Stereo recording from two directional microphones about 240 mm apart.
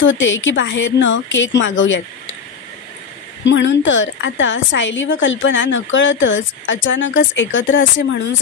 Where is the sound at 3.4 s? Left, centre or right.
Left.